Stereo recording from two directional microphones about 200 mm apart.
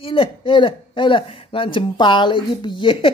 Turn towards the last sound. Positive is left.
turn(degrees=25)  # may be behind; listen again after turning